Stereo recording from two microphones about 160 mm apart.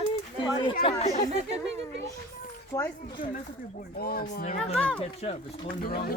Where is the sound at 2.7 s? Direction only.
20° left (ahead or behind).